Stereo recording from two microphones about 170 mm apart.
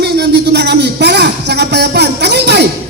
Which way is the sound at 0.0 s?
75° right (ahead or behind).